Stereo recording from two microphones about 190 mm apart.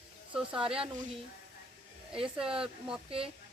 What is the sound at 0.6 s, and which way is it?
Speech, 30° right (ahead or behind).